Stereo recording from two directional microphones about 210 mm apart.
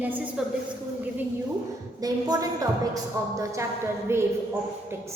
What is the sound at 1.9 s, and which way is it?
A woman's voice, 15° right (ahead or behind).